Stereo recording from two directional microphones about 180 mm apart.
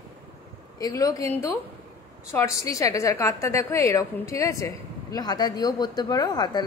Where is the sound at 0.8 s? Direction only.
20° left (ahead or behind).